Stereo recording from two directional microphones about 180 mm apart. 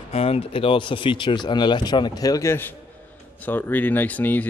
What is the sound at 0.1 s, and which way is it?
Speech, 35° left (ahead or behind).